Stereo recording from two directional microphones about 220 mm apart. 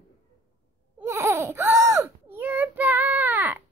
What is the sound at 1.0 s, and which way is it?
Baby cry, 10° right (ahead or behind).